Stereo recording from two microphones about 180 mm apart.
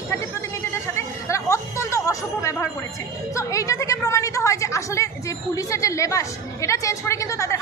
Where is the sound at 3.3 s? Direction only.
15° left (ahead or behind).